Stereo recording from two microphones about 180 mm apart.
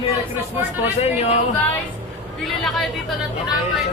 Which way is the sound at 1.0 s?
35° left (ahead or behind).